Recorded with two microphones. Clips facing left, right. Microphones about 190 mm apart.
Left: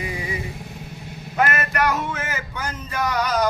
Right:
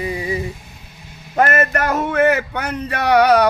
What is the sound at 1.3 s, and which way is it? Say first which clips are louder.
Speech: right 6 dB; 50° right (ahead or behind).